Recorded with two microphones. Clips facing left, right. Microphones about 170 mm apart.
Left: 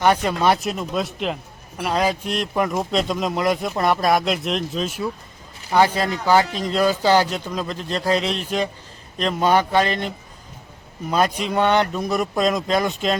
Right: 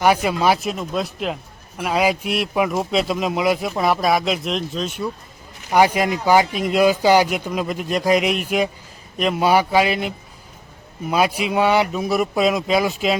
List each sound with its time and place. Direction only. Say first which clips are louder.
0.0 s a man's voice: right 1 dB; 5° right (ahead or behind)
5.7 s speech: right 2 dB; 15° right (ahead or behind)
11.1 s speech: right 1 dB; 10° right (ahead or behind)